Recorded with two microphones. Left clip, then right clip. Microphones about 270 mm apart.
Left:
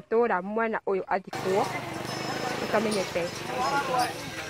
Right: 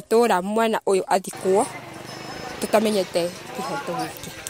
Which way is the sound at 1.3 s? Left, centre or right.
Centre.